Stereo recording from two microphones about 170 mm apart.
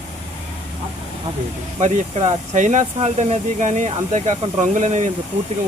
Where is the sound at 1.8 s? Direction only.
45° right (ahead or behind).